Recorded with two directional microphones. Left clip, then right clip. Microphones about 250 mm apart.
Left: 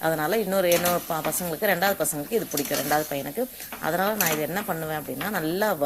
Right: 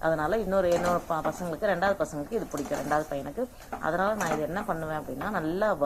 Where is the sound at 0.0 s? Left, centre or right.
Left.